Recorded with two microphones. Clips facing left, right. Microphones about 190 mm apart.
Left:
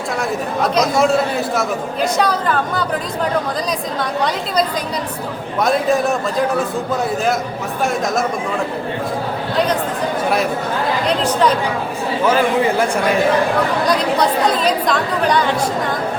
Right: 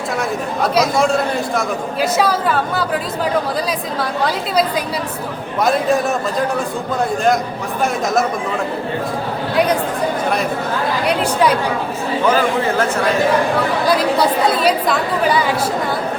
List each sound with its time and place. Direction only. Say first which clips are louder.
0.2 s a man's voice: left 1 dB; centre (ahead or behind)
5.6 s a man's voice: even; centre (ahead or behind)
11.0 s speech: right 1 dB; 10° right (ahead or behind)
13.8 s a man's voice: right 1 dB; 5° right (ahead or behind)